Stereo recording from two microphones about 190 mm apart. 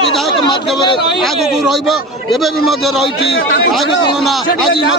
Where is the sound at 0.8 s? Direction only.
25° left (ahead or behind).